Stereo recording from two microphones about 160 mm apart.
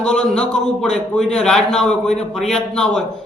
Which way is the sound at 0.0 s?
5° left (ahead or behind).